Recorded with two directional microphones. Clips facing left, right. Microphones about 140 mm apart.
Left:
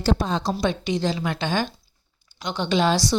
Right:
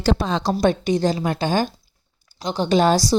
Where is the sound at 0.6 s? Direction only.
45° right (ahead or behind).